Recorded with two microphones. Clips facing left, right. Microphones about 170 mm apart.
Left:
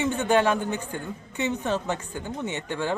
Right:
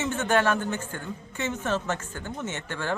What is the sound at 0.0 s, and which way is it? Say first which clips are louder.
A man's voice: left 2 dB; 15° left (ahead or behind).